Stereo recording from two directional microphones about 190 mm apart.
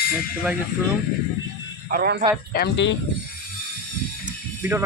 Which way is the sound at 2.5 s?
65° left (ahead or behind).